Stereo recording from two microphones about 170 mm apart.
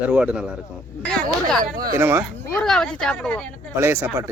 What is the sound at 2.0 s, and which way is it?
Speech, 10° right (ahead or behind).